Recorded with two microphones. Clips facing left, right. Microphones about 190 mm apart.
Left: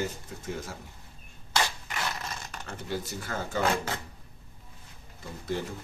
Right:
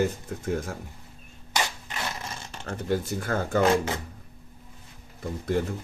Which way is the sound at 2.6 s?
50° right (ahead or behind).